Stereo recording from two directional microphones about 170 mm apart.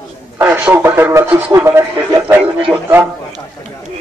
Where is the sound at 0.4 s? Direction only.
10° right (ahead or behind).